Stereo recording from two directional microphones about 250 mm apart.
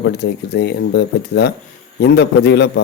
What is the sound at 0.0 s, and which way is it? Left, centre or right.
A man's voice, left.